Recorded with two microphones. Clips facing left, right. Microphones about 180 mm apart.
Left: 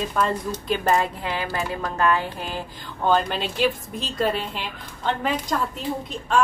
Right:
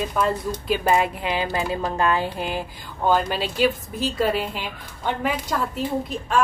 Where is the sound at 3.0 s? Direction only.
5° right (ahead or behind).